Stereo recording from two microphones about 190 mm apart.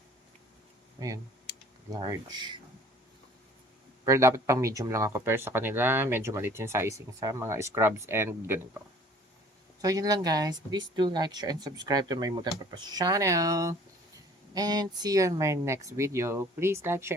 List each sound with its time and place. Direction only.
0.9 s speech: 15° right (ahead or behind)
4.0 s speech: 15° right (ahead or behind)
9.8 s speech: 20° right (ahead or behind)